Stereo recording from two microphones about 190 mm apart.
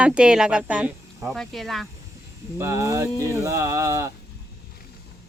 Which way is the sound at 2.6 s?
15° right (ahead or behind).